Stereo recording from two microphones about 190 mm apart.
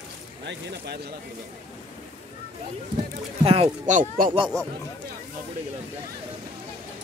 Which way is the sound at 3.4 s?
30° right (ahead or behind).